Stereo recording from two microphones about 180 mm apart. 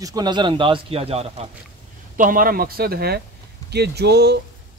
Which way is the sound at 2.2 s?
50° right (ahead or behind).